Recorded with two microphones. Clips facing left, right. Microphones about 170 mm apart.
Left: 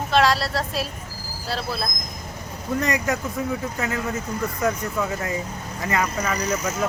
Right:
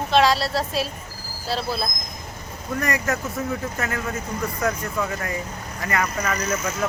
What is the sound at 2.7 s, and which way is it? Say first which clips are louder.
Speech: left 1 dB; 20° left (ahead or behind).